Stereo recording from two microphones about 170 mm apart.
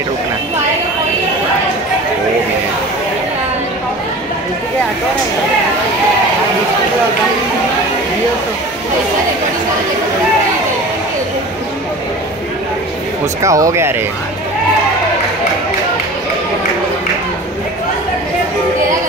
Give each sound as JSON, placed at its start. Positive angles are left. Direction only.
{"t": 13.4, "sound": "speech", "side_deg": -20}